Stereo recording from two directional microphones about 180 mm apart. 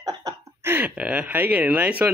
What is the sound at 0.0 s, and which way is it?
Speech, 20° right (ahead or behind).